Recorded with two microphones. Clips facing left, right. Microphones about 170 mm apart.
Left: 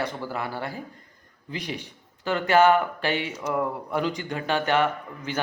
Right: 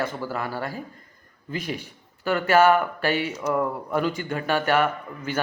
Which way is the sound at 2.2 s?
20° left (ahead or behind).